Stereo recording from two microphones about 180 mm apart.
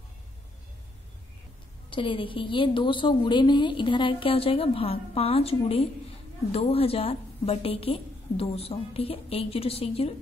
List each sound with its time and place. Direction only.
1.9 s a woman's voice: 30° left (ahead or behind)